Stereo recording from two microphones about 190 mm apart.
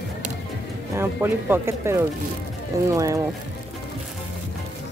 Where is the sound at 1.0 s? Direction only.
10° right (ahead or behind).